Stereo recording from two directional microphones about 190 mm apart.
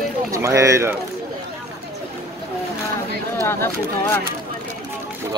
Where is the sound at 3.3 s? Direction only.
15° left (ahead or behind).